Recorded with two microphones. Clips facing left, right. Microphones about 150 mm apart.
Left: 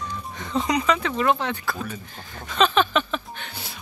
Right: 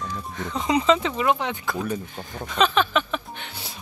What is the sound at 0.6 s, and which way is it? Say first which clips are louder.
Speech: right 2 dB; 25° right (ahead or behind).